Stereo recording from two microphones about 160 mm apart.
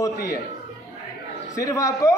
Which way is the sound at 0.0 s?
20° left (ahead or behind).